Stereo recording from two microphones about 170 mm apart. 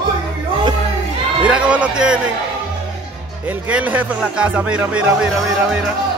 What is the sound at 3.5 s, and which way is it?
Speech, 10° right (ahead or behind).